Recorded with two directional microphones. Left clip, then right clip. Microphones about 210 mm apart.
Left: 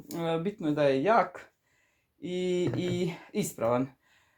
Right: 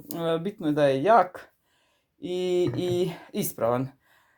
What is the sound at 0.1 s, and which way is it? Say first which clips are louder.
Speech: right 3 dB; 45° right (ahead or behind).